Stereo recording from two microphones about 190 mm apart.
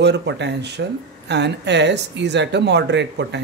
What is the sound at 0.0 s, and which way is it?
Speech, 65° right (ahead or behind).